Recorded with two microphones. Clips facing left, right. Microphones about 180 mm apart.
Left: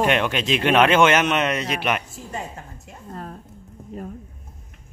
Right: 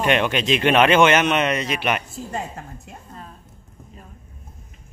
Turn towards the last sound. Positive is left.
turn(degrees=55)  # may be behind; listen again after turning